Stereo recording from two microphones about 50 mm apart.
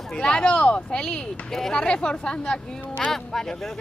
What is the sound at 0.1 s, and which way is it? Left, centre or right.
Speech, centre.